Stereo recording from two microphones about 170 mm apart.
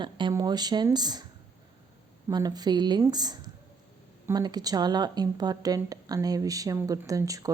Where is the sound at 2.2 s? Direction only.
20° right (ahead or behind).